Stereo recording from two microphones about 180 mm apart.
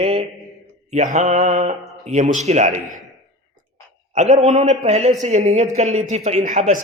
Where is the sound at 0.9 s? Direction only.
40° right (ahead or behind).